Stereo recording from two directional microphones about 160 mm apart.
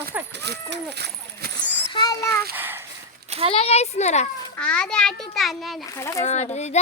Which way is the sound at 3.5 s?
40° left (ahead or behind).